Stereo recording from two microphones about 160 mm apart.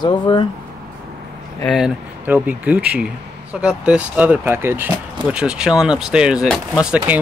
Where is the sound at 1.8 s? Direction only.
10° right (ahead or behind).